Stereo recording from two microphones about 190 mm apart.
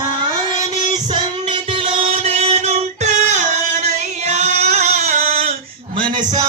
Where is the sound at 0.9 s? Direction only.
25° right (ahead or behind).